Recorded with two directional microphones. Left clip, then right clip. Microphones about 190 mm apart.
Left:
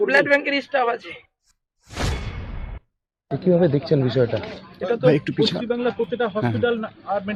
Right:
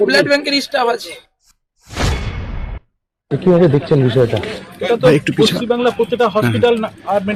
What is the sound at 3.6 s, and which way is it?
Speech, 15° right (ahead or behind).